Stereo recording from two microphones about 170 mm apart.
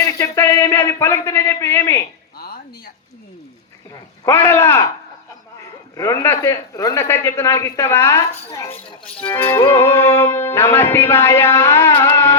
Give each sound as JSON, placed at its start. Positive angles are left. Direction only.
{"t": 0.1, "sound": "a sound", "side_deg": 15}
{"t": 4.3, "sound": "music", "side_deg": 15}
{"t": 6.0, "sound": "music", "side_deg": 15}